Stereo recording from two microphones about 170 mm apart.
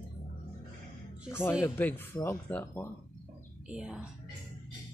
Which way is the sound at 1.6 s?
10° left (ahead or behind).